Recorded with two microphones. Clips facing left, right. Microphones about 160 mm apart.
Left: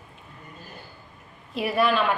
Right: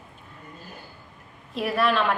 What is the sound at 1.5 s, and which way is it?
Speech, centre (ahead or behind).